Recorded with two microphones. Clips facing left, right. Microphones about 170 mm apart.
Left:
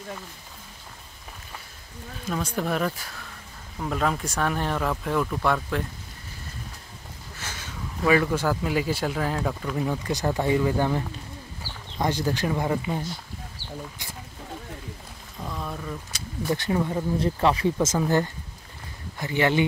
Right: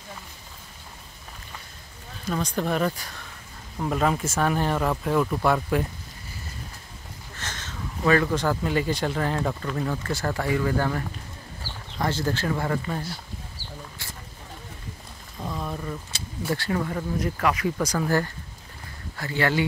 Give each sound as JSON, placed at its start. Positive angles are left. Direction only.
{"t": 2.2, "sound": "speech", "side_deg": 5}
{"t": 7.3, "sound": "speech", "side_deg": 10}
{"t": 15.4, "sound": "a sound", "side_deg": -5}
{"t": 16.4, "sound": "speech", "side_deg": 20}
{"t": 17.7, "sound": "speech", "side_deg": 15}